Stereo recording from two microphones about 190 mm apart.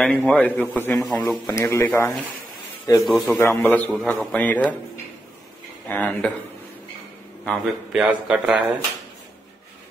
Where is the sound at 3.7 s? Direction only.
Centre (ahead or behind).